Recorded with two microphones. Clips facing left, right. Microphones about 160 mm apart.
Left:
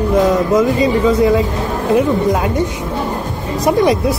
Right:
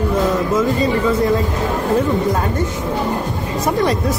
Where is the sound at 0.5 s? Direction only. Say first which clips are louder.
Left 4 dB; 15° left (ahead or behind).